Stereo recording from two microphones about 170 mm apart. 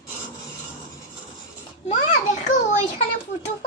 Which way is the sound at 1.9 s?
45° left (ahead or behind).